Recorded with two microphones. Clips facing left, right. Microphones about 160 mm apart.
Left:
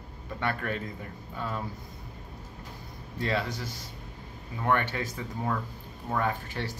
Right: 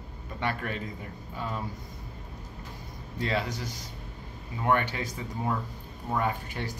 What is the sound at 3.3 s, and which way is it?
Speech, 15° right (ahead or behind).